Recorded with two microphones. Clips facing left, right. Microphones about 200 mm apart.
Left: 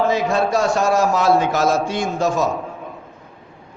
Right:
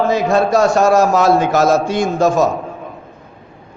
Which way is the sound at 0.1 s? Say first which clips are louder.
Right 4 dB; 40° right (ahead or behind).